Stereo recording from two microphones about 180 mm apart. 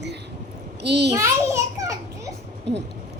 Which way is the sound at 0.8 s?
70° right (ahead or behind).